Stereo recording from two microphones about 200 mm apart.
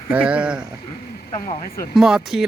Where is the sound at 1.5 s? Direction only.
50° left (ahead or behind).